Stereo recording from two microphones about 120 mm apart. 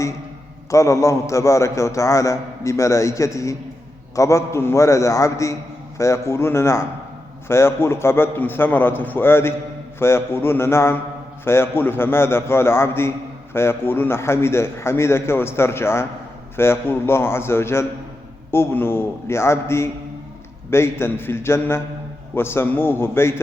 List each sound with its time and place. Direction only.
0.7 s a man's voice: 25° left (ahead or behind)